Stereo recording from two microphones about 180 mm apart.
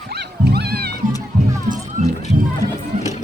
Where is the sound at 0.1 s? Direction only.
65° right (ahead or behind).